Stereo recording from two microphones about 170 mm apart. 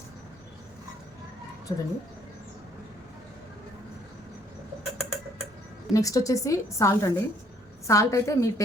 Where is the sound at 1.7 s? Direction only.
25° left (ahead or behind).